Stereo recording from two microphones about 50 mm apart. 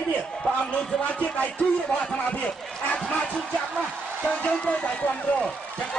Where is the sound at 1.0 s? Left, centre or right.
Left.